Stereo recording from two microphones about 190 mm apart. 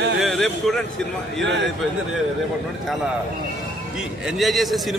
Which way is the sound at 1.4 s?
70° right (ahead or behind).